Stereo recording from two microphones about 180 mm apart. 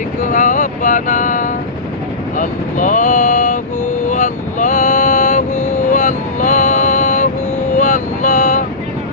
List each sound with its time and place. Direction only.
0.2 s vehicle: 45° left (ahead or behind)